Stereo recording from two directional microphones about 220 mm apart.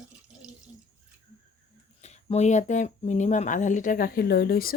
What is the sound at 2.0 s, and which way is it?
Speech, 30° left (ahead or behind).